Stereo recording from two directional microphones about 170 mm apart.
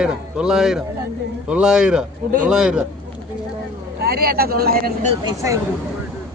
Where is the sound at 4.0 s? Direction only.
60° right (ahead or behind).